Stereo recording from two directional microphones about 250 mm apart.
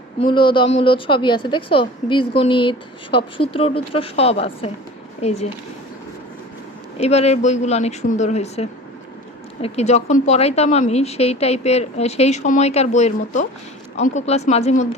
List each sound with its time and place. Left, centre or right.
0.2 s a woman's voice: centre
7.0 s a woman's voice: left